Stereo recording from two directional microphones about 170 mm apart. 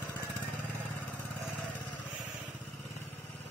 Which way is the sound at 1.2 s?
10° right (ahead or behind).